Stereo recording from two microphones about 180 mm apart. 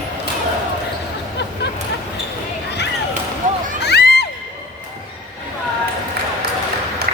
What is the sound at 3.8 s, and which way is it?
Children shouting, 65° left (ahead or behind).